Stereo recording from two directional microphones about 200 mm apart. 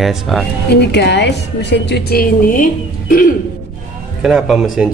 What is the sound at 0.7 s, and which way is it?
A woman's voice, 55° left (ahead or behind).